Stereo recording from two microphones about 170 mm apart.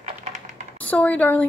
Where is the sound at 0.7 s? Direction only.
10° left (ahead or behind).